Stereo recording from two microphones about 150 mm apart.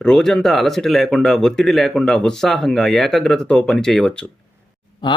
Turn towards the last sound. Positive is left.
turn(degrees=30)  # may be behind; listen again after turning